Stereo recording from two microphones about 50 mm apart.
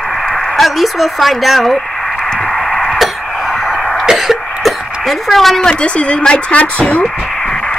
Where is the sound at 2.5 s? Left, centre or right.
Centre.